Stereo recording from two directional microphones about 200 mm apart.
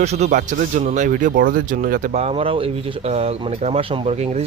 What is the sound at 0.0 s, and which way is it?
Speech, 35° right (ahead or behind).